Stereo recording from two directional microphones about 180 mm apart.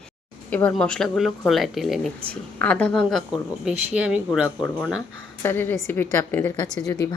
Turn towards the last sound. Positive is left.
turn(degrees=20)  # may be behind; listen again after turning